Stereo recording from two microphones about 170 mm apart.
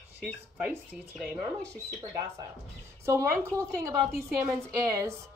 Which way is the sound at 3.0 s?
15° right (ahead or behind).